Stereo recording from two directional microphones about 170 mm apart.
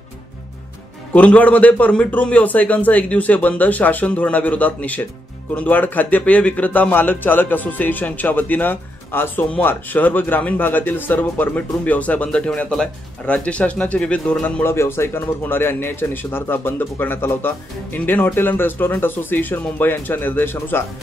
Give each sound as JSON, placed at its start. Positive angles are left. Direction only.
{"t": 1.1, "sound": "a man's voice", "side_deg": 10}